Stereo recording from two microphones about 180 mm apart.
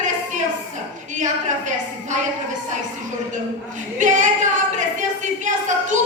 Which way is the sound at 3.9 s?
45° right (ahead or behind).